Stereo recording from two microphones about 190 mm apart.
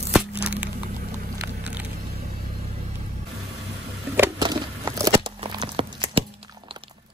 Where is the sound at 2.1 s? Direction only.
55° right (ahead or behind).